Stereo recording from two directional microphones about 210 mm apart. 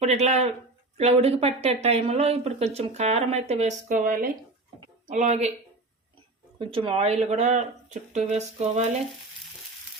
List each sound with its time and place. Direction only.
0.0 s speech: 30° right (ahead or behind)
6.6 s speech: 25° right (ahead or behind)